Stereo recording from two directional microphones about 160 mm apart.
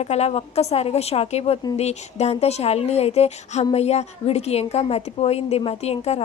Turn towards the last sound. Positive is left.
turn(degrees=40)  # may be behind; listen again after turning